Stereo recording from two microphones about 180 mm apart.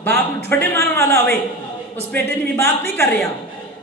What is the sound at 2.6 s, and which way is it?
Speech, 10° left (ahead or behind).